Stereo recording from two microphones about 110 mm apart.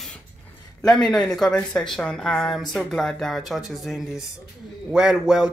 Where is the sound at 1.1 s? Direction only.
Centre (ahead or behind).